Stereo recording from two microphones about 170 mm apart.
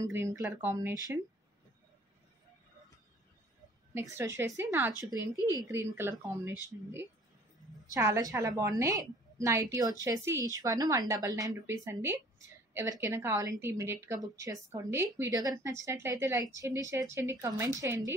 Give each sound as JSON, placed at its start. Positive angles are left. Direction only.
{"t": 0.0, "sound": "a woman's voice", "side_deg": -15}
{"t": 3.9, "sound": "a woman's voice", "side_deg": -15}
{"t": 5.3, "sound": "speech", "side_deg": 20}
{"t": 5.7, "sound": "a woman's voice", "side_deg": -15}
{"t": 7.9, "sound": "a woman's voice", "side_deg": -20}